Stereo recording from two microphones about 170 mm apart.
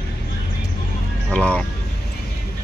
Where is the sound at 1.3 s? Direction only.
5° left (ahead or behind).